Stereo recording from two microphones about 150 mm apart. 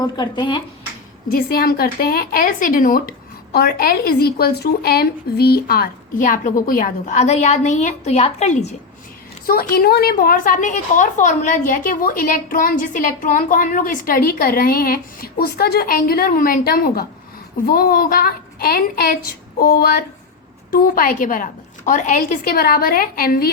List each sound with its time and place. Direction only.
0.0 s speech: 30° left (ahead or behind)
1.3 s a woman's voice: 85° left; by 8.7 s 50° left (ahead or behind)
9.5 s a woman's voice: 90° left
20.7 s a woman's voice: 65° left (ahead or behind)